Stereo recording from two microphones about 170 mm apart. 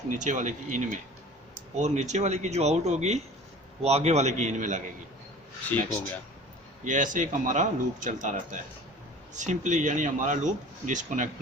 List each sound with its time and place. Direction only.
0.1 s speech: 45° right (ahead or behind)
5.7 s speech: 10° left (ahead or behind)
6.8 s speech: 50° right (ahead or behind)